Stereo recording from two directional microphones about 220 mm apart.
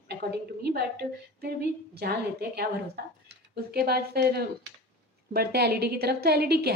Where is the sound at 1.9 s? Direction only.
45° right (ahead or behind).